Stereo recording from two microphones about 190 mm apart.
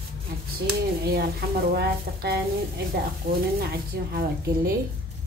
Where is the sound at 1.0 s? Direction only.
55° right (ahead or behind).